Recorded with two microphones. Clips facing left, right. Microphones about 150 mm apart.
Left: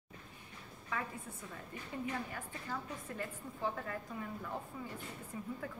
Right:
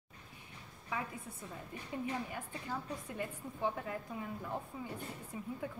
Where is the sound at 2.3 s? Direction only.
10° right (ahead or behind).